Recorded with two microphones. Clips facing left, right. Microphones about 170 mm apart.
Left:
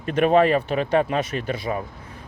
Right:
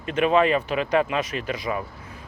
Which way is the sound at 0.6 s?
30° left (ahead or behind).